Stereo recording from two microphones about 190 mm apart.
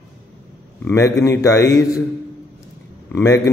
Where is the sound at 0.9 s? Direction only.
15° left (ahead or behind).